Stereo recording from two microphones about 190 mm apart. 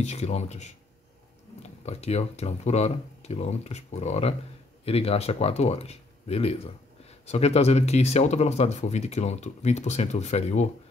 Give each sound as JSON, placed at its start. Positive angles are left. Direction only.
{"t": 0.0, "sound": "speech", "side_deg": 35}
{"t": 1.9, "sound": "speech", "side_deg": 35}